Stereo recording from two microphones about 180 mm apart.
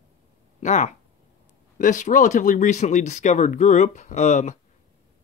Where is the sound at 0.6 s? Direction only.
40° left (ahead or behind).